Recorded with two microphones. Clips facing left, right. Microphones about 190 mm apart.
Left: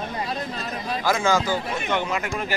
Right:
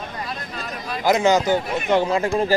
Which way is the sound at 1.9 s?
30° right (ahead or behind).